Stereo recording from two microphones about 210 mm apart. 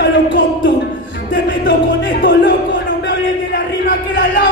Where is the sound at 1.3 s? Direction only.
60° left (ahead or behind).